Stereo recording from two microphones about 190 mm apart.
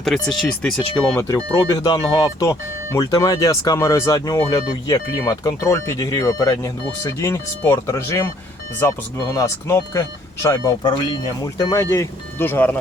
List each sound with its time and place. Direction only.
0.0 s speech: centre (ahead or behind)